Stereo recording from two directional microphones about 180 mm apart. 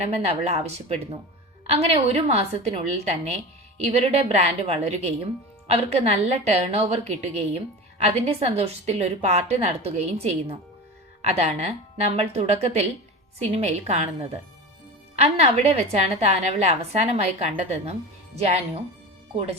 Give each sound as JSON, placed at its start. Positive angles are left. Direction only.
{"t": 0.3, "sound": "a woman's voice", "side_deg": -35}